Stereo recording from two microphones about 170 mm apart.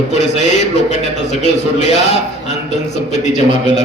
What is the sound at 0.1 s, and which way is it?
A man's voice, 40° left (ahead or behind).